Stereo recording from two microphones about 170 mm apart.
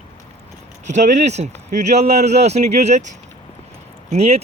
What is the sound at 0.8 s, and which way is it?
Speech, 45° right (ahead or behind).